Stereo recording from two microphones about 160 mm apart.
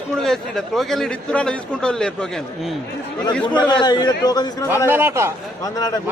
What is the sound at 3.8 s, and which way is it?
Speech, 25° left (ahead or behind).